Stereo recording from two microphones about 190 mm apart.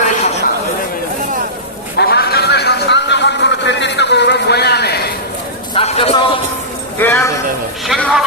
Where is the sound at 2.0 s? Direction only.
55° left (ahead or behind).